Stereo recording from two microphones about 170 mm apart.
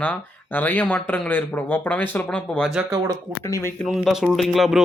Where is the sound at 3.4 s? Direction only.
20° left (ahead or behind).